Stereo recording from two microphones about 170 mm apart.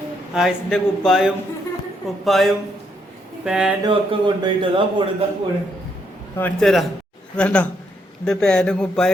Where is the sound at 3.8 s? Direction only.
25° right (ahead or behind).